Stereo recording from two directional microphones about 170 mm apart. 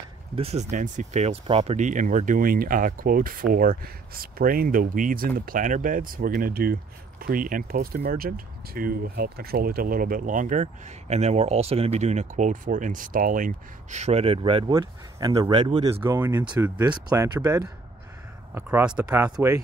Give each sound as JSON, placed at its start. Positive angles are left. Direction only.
{"t": 0.4, "sound": "speech", "side_deg": -40}
{"t": 18.5, "sound": "speech", "side_deg": -10}